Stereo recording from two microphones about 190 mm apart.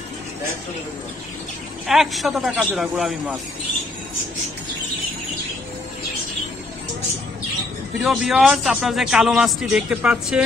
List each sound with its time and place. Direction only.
1.9 s a man's voice: centre (ahead or behind)
8.0 s a man's voice: centre (ahead or behind)